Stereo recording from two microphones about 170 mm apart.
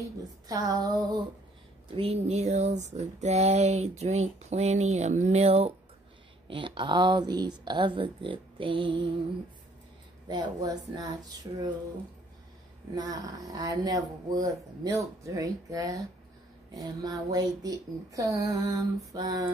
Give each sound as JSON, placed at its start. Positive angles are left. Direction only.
{"t": 0.5, "sound": "speech", "side_deg": -20}
{"t": 2.0, "sound": "a sound", "side_deg": -35}
{"t": 6.4, "sound": "speech", "side_deg": -30}
{"t": 10.2, "sound": "speech", "side_deg": -25}
{"t": 12.9, "sound": "speech", "side_deg": -25}